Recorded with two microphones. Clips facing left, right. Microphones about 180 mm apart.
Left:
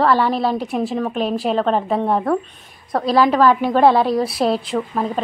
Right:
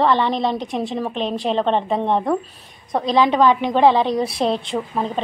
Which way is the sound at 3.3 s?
5° left (ahead or behind).